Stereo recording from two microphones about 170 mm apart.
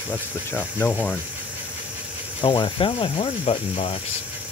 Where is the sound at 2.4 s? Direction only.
30° left (ahead or behind).